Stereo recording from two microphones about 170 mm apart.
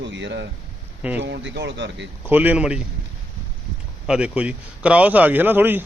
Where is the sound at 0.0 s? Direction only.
90° right.